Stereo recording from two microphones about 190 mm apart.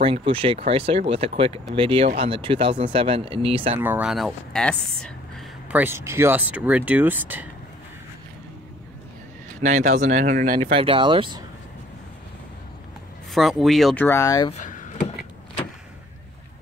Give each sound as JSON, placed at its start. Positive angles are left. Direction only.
{"t": 0.0, "sound": "speech", "side_deg": -30}
{"t": 3.8, "sound": "speech", "side_deg": -5}
{"t": 5.8, "sound": "speech", "side_deg": -15}
{"t": 9.6, "sound": "speech", "side_deg": -40}
{"t": 10.7, "sound": "speech", "side_deg": -30}
{"t": 13.3, "sound": "speech", "side_deg": 0}
{"t": 14.0, "sound": "speech", "side_deg": 15}
{"t": 14.5, "sound": "a sound", "side_deg": 40}